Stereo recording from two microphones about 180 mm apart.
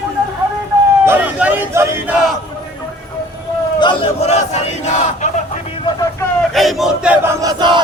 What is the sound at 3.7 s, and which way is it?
Battle cry, 25° left (ahead or behind).